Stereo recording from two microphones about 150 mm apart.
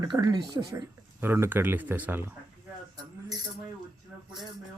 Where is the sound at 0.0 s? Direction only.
25° right (ahead or behind).